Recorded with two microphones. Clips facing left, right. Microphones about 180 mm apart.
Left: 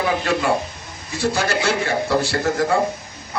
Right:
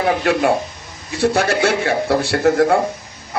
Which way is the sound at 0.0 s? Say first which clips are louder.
Right 4 dB; 60° right (ahead or behind).